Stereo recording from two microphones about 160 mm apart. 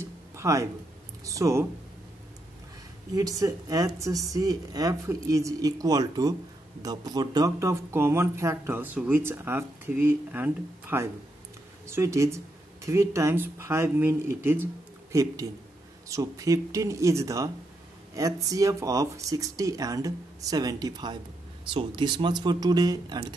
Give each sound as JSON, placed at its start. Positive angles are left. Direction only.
{"t": 0.0, "sound": "music", "side_deg": -20}
{"t": 1.2, "sound": "speech", "side_deg": -20}
{"t": 3.2, "sound": "speech", "side_deg": -20}